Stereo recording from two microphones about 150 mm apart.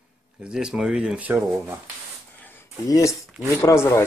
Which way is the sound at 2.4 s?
15° left (ahead or behind).